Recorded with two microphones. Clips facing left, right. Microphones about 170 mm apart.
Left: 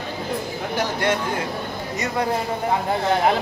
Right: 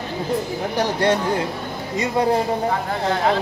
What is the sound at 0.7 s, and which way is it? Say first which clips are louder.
Speech: right 3 dB; 35° right (ahead or behind).